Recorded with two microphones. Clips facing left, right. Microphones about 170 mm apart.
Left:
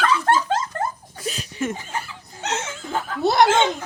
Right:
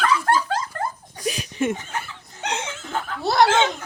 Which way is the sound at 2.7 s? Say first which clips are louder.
Left 1 dB; 15° left (ahead or behind).